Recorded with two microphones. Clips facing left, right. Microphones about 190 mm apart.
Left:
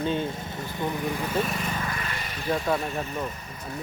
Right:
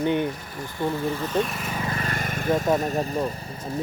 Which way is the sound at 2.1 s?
50° right (ahead or behind).